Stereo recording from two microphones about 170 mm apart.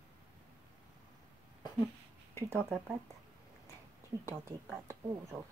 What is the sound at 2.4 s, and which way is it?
Speech, 15° right (ahead or behind).